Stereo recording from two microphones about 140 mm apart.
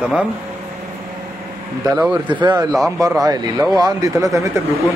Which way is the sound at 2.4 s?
30° right (ahead or behind).